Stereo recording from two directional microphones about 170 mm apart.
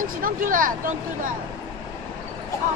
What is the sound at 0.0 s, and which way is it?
Speech, 55° right (ahead or behind).